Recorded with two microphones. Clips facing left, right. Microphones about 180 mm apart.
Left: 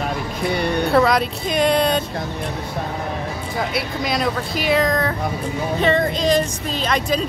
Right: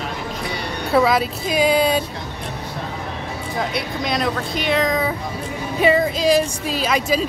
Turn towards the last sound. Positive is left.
turn(degrees=-5)  # may be behind; listen again after turning